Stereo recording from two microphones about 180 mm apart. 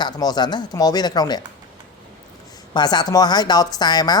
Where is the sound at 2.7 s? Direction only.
25° left (ahead or behind).